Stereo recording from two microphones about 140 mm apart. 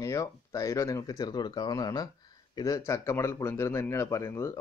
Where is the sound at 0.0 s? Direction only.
25° left (ahead or behind).